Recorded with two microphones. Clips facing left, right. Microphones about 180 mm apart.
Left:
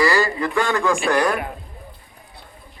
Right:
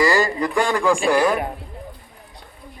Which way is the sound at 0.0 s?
20° right (ahead or behind).